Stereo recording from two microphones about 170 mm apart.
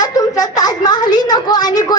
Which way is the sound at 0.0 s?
20° left (ahead or behind).